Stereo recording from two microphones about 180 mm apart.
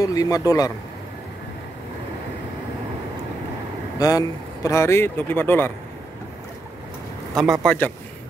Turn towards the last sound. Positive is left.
turn(degrees=10)  # may be behind; listen again after turning